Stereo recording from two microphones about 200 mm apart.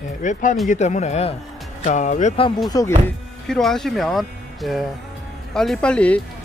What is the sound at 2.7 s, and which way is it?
Speech, 15° left (ahead or behind).